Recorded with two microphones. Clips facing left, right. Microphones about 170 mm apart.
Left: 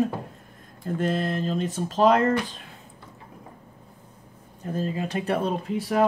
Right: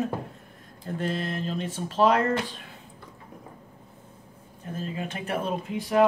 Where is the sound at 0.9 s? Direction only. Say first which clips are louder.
Left 4 dB; 45° left (ahead or behind).